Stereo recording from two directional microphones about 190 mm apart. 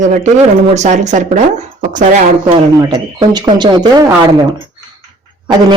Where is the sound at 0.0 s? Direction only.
40° right (ahead or behind).